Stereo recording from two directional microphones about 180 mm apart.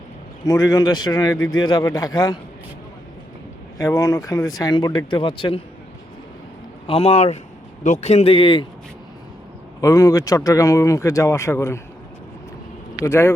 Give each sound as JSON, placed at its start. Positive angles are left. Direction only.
{"t": 0.4, "sound": "speech", "side_deg": 15}
{"t": 1.4, "sound": "speech", "side_deg": 90}
{"t": 1.6, "sound": "speech", "side_deg": 20}
{"t": 3.8, "sound": "speech", "side_deg": 15}
{"t": 6.8, "sound": "speech", "side_deg": 35}
{"t": 9.8, "sound": "speech", "side_deg": 20}
{"t": 13.0, "sound": "speech", "side_deg": 15}